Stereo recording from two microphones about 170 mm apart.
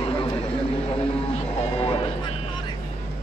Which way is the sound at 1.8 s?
30° left (ahead or behind).